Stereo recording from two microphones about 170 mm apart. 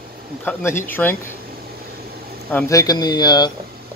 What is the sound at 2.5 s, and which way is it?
Speech, 10° left (ahead or behind).